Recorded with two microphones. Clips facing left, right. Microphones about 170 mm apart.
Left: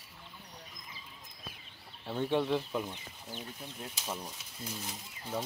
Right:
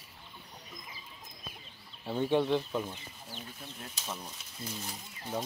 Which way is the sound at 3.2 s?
15° left (ahead or behind).